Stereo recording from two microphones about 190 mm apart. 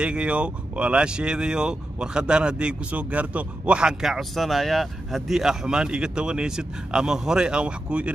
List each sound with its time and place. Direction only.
0.0 s speech: 5° right (ahead or behind)